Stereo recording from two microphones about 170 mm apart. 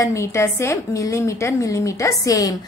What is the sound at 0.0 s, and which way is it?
A woman's voice, 15° left (ahead or behind).